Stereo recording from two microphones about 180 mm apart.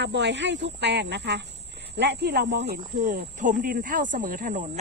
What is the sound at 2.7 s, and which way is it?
Speech, 50° right (ahead or behind).